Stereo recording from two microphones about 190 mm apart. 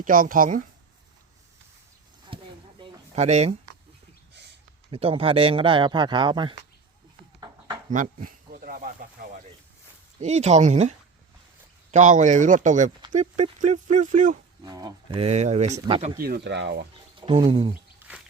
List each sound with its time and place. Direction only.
0.0 s speech: 45° right (ahead or behind)
2.3 s a sound: 25° right (ahead or behind)
4.9 s speech: 30° right (ahead or behind)
7.9 s snake: 45° right (ahead or behind)
10.2 s speech: 35° right (ahead or behind)
14.6 s speech: 20° right (ahead or behind)
15.2 s speech: 35° right (ahead or behind)
16.2 s speech: 60° right (ahead or behind)
17.2 s a sound: 30° right (ahead or behind)
17.5 s speech: 30° right (ahead or behind)